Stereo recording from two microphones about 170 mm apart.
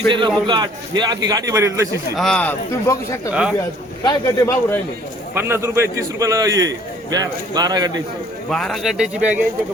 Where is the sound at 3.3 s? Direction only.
5° right (ahead or behind).